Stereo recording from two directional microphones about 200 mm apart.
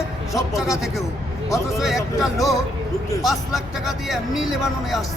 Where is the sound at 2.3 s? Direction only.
15° left (ahead or behind).